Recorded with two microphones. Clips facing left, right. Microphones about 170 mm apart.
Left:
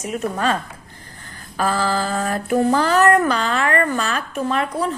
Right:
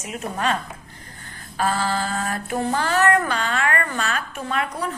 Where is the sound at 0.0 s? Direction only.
35° left (ahead or behind).